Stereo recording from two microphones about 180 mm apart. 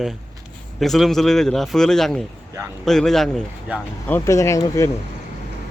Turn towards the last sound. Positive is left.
turn(degrees=15)  # may be behind; listen again after turning